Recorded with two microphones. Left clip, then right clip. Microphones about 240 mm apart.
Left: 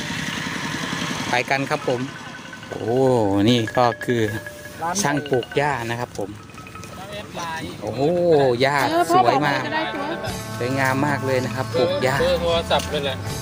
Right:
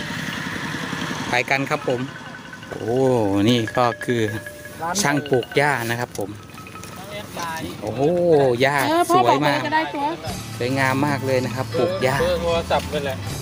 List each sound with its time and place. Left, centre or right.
0.0 s vehicle: left
1.3 s speech: centre
2.8 s speech: centre
5.5 s speech: centre
7.9 s speech: centre
8.9 s speech: right
9.2 s speech: centre
12.2 s speech: left